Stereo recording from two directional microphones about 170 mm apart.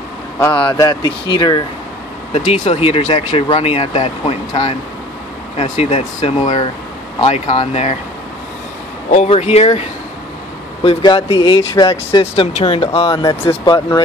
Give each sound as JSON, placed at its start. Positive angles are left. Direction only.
{"t": 0.5, "sound": "speech", "side_deg": 30}
{"t": 2.3, "sound": "speech", "side_deg": 40}
{"t": 9.1, "sound": "speech", "side_deg": 40}
{"t": 13.1, "sound": "speech", "side_deg": 25}